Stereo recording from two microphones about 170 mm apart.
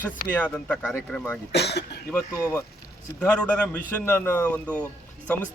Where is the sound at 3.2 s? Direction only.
10° left (ahead or behind).